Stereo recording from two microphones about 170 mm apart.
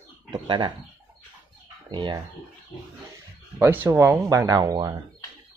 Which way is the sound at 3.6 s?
10° right (ahead or behind).